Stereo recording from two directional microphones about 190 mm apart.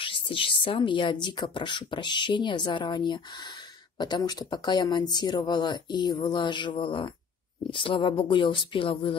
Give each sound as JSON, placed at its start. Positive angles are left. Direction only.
{"t": 0.0, "sound": "speech", "side_deg": 25}